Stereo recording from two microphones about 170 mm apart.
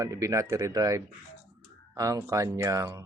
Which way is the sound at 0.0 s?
20° right (ahead or behind).